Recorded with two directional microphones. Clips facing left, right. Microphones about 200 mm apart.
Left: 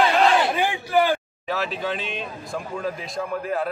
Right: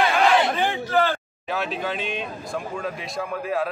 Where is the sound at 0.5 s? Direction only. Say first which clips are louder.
Left 1 dB; 10° left (ahead or behind).